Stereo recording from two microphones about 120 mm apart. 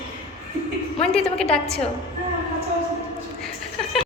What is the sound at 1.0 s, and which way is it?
Speech, 5° left (ahead or behind).